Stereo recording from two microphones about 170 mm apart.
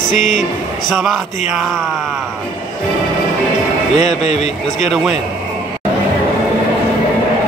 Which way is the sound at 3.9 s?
40° left (ahead or behind).